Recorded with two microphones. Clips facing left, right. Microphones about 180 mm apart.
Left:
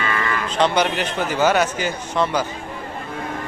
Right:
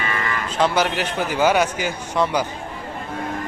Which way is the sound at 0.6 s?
5° right (ahead or behind).